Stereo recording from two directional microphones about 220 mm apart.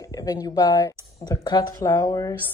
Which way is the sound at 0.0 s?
15° left (ahead or behind).